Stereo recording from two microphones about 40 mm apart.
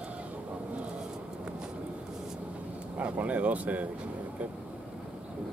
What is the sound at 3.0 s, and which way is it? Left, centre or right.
Speech, right.